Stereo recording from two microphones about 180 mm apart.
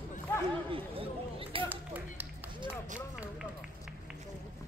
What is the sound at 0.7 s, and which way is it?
Chatter, 30° right (ahead or behind).